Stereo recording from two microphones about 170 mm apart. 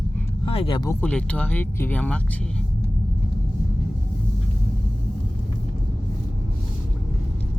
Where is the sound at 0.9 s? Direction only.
10° left (ahead or behind).